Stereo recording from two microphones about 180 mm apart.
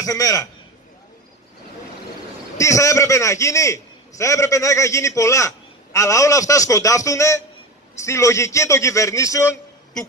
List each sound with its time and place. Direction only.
0.0 s a man's voice: 20° left (ahead or behind)
2.6 s a man's voice: 15° left (ahead or behind)